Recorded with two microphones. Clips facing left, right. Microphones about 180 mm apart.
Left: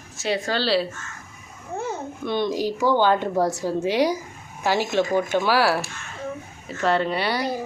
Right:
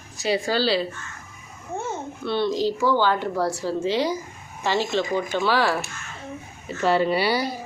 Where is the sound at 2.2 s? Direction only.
15° left (ahead or behind).